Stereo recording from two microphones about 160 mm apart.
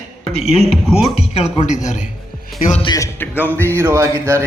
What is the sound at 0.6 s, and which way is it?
Speech, centre (ahead or behind).